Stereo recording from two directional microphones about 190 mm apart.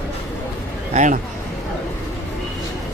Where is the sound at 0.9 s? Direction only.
35° right (ahead or behind).